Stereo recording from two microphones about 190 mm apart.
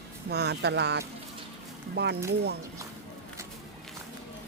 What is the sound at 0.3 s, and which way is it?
Speech, 60° right (ahead or behind).